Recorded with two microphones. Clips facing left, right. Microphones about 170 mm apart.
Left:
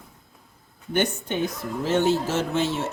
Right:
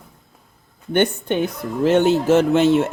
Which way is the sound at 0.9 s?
60° right (ahead or behind).